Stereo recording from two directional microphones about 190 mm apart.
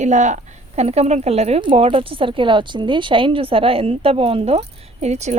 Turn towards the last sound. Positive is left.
turn(degrees=-35)  # may be behind; listen again after turning